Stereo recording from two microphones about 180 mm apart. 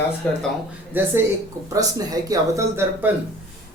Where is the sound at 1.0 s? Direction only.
10° right (ahead or behind).